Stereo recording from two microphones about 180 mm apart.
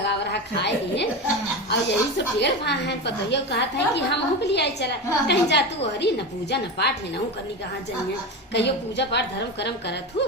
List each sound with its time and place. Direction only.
0.0 s a woman's voice: 65° left (ahead or behind)
8.5 s a woman's voice: 70° left (ahead or behind)